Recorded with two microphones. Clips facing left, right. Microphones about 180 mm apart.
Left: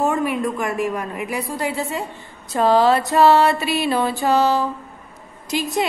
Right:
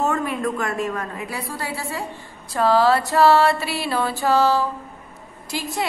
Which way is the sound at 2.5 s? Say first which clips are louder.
Left 2 dB; 20° left (ahead or behind).